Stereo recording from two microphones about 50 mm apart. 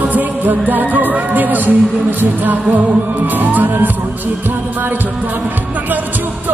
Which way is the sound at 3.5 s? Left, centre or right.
Right.